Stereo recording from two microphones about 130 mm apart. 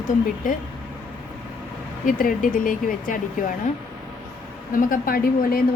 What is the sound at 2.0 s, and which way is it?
Speech, 90° left.